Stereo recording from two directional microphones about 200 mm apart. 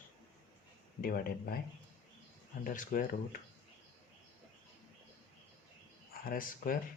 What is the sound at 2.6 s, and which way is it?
Speech, 40° left (ahead or behind).